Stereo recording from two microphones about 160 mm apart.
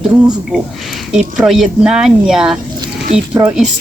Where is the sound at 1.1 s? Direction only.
5° right (ahead or behind).